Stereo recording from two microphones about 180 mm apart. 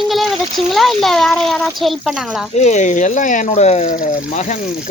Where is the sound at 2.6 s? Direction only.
40° left (ahead or behind).